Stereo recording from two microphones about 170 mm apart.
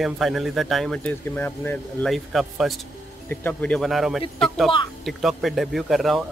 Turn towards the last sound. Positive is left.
turn(degrees=0)  # may be behind; listen again after turning